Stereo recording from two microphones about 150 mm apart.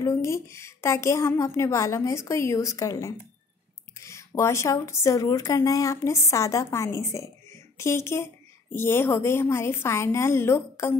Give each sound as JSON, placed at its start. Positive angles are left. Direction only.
{"t": 0.0, "sound": "a woman's voice", "side_deg": 20}